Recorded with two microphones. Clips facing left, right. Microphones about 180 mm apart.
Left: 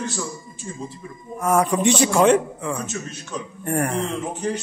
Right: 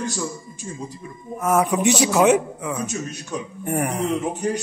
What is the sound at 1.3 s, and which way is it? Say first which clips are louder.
A man's voice: even; 5° right (ahead or behind).